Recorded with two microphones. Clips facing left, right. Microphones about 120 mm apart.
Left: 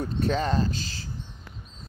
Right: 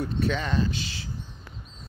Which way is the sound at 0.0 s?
40° left (ahead or behind).